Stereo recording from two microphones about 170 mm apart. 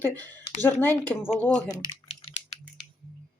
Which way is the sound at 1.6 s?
30° left (ahead or behind).